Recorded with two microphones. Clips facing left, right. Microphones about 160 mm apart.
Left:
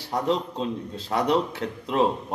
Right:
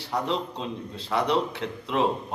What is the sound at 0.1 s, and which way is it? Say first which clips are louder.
A man's voice: left 3 dB; 40° left (ahead or behind).